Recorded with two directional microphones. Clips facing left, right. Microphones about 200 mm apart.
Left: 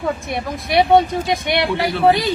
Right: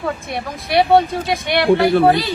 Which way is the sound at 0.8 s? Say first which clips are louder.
Even; 20° left (ahead or behind).